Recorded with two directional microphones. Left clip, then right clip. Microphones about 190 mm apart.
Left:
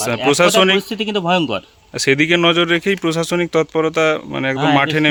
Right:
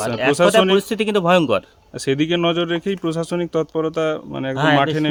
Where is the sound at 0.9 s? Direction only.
10° right (ahead or behind).